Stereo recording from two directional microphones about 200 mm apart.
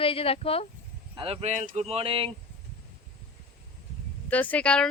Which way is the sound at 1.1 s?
25° right (ahead or behind).